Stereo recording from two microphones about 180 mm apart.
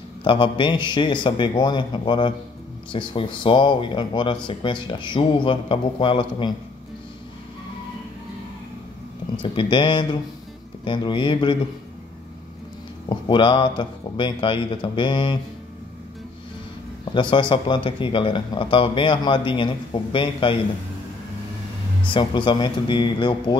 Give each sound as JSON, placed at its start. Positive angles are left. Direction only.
{"t": 0.2, "sound": "speech", "side_deg": 30}
{"t": 9.4, "sound": "speech", "side_deg": 25}
{"t": 13.1, "sound": "speech", "side_deg": 25}
{"t": 17.0, "sound": "speech", "side_deg": 25}
{"t": 22.1, "sound": "speech", "side_deg": 25}